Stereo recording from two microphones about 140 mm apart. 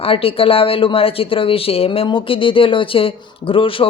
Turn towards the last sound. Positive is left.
turn(degrees=40)  # may be behind; listen again after turning